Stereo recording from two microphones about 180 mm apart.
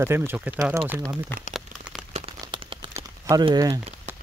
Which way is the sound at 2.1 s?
35° right (ahead or behind).